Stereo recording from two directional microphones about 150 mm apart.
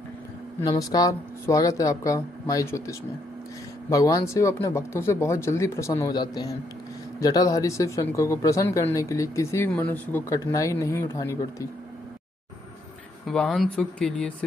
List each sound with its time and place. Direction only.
0.7 s speech: 25° left (ahead or behind)
13.3 s speech: 5° left (ahead or behind)